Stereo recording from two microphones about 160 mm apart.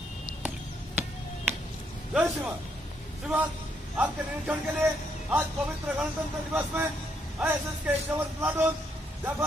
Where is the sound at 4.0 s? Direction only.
10° right (ahead or behind).